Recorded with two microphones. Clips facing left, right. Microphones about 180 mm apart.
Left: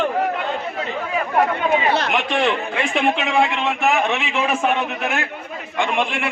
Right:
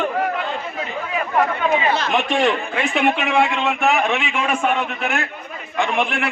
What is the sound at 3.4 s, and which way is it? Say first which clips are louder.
A man's voice: right 1 dB; centre (ahead or behind).